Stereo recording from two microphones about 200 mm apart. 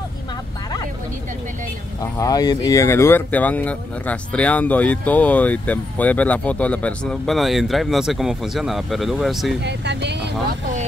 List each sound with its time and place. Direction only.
2.1 s speech: 20° left (ahead or behind); by 9.6 s centre (ahead or behind)
9.6 s speech: 60° right (ahead or behind)